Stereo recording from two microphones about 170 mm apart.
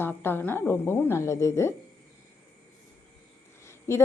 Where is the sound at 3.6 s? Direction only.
15° left (ahead or behind).